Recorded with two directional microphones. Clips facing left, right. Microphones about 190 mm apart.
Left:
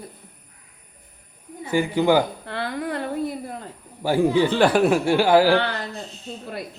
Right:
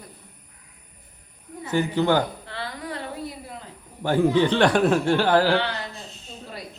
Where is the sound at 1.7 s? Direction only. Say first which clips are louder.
Left 2 dB; 10° left (ahead or behind).